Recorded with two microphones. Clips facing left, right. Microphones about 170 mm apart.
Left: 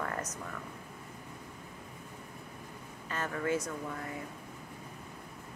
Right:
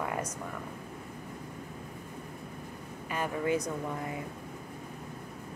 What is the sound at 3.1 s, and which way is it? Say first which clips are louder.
Speech: right 3 dB; 15° right (ahead or behind).